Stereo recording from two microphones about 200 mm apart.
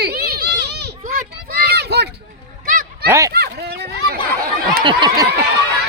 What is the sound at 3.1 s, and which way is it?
Speech, 15° right (ahead or behind).